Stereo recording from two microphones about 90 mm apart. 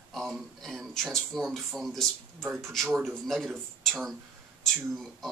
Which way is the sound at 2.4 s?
30° right (ahead or behind).